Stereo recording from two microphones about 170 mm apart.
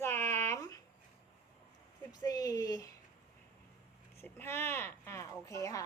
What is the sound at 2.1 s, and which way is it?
Speech, 20° left (ahead or behind).